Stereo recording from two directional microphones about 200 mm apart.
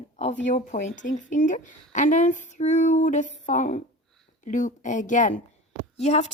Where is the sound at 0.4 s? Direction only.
35° left (ahead or behind).